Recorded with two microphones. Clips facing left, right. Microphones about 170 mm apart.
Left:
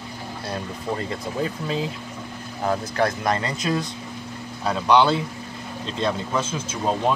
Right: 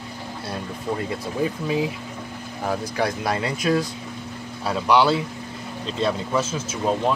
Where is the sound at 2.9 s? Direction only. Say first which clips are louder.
Left 1 dB; 10° right (ahead or behind).